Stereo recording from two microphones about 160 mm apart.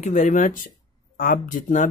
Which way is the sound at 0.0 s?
50° left (ahead or behind).